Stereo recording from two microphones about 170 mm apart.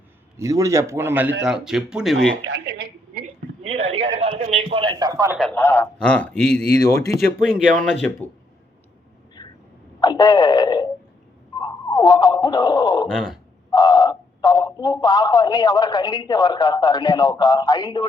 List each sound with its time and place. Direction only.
0.3 s speech: 20° right (ahead or behind)
2.4 s a sound: 85° right
3.6 s a man's voice: 35° right (ahead or behind); by 5.4 s 20° right (ahead or behind)
5.4 s a man's voice: 10° left (ahead or behind)
6.7 s speech: 20° left (ahead or behind)
7.4 s speech: 5° left (ahead or behind)
9.4 s a sound: 25° left (ahead or behind)
10.0 s speech: 20° left (ahead or behind)
13.1 s speech: 5° left (ahead or behind)
13.7 s speech: 20° left (ahead or behind)